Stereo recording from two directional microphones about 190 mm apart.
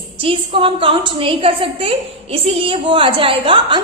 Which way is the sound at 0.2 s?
30° right (ahead or behind).